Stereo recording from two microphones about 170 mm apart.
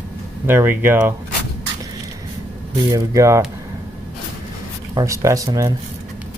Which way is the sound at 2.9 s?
20° right (ahead or behind).